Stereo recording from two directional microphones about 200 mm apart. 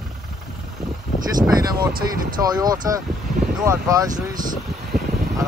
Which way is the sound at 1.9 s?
45° right (ahead or behind).